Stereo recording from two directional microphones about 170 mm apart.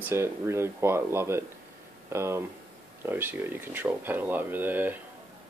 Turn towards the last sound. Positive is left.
turn(degrees=-10)  # may be behind; listen again after turning